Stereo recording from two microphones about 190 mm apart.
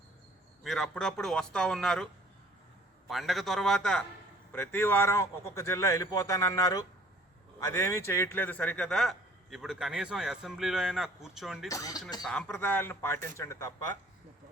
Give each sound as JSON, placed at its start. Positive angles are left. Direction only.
{"t": 0.6, "sound": "a man's voice", "side_deg": 0}
{"t": 3.1, "sound": "a man's voice", "side_deg": 0}
{"t": 11.7, "sound": "speech", "side_deg": 20}
{"t": 12.2, "sound": "a man's voice", "side_deg": 5}